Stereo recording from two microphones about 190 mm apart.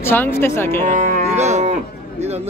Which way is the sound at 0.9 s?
40° right (ahead or behind).